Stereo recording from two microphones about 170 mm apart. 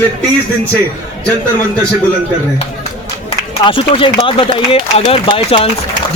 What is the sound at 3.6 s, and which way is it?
Speech, 30° left (ahead or behind).